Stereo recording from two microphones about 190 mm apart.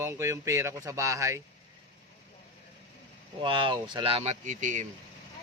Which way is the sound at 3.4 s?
25° right (ahead or behind).